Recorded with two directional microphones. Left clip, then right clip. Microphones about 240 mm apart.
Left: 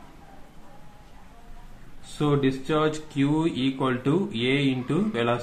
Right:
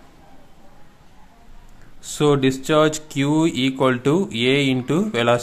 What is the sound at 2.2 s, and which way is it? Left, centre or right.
Speech, right.